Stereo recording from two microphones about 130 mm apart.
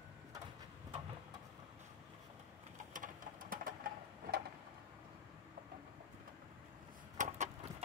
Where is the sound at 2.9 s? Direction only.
90° right.